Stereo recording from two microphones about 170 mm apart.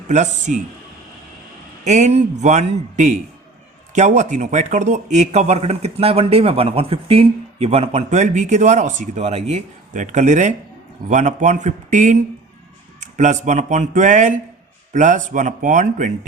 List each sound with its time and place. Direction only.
0.1 s speech: 45° right (ahead or behind)
1.8 s speech: 45° right (ahead or behind)